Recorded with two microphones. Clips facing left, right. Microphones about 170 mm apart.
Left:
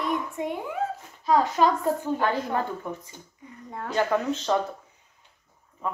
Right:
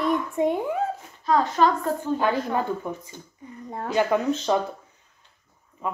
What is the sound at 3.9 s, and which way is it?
Speech, 10° right (ahead or behind).